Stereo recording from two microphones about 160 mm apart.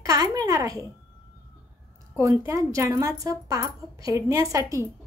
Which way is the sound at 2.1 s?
20° right (ahead or behind).